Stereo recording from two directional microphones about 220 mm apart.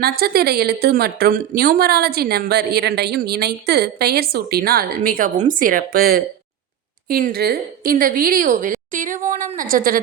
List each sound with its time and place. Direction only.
0.0 s a woman's voice: 45° right (ahead or behind)